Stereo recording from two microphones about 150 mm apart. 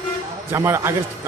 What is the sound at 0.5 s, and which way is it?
Speech, 15° right (ahead or behind).